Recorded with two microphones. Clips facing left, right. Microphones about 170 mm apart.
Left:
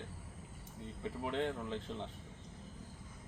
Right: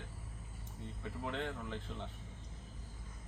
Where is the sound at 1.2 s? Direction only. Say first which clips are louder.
Left 3 dB; 20° left (ahead or behind).